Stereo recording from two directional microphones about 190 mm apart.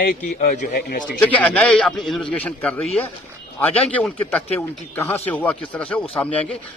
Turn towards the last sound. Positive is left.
turn(degrees=5)  # may be behind; listen again after turning